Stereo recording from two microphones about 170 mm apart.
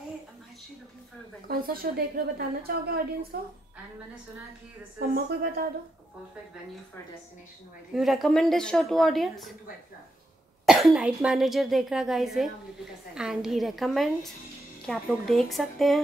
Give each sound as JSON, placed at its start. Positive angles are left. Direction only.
{"t": 1.5, "sound": "a woman's voice", "side_deg": -60}
{"t": 4.9, "sound": "a woman's voice", "side_deg": -60}
{"t": 7.9, "sound": "speech", "side_deg": 0}
{"t": 10.6, "sound": "speech", "side_deg": 0}